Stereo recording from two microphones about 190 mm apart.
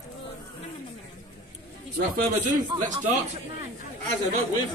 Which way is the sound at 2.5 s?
20° right (ahead or behind).